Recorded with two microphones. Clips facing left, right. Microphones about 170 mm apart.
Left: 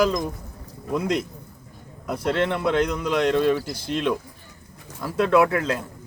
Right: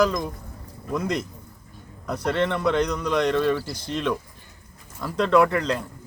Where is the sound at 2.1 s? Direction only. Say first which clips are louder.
Left 1 dB; 15° left (ahead or behind).